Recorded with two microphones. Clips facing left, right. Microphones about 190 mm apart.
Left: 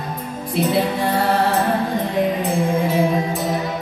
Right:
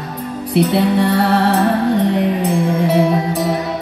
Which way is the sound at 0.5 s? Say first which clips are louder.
Right 5 dB; 70° right (ahead or behind).